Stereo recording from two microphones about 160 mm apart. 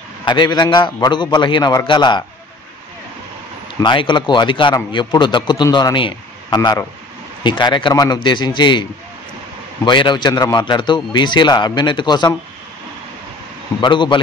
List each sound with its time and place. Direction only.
0.2 s a man's voice: 30° left (ahead or behind)
3.8 s a man's voice: 30° left (ahead or behind)
9.8 s a man's voice: 30° left (ahead or behind)
13.7 s a man's voice: 30° left (ahead or behind)